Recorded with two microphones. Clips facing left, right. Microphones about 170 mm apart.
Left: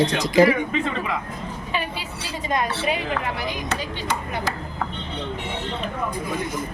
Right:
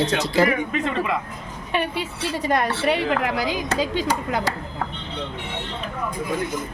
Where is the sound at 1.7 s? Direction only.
60° right (ahead or behind); by 4.1 s 90° right.